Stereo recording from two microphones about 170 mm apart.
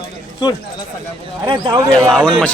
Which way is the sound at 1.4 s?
25° right (ahead or behind).